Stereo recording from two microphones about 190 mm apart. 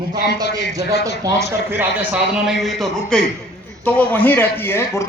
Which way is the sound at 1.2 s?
10° right (ahead or behind).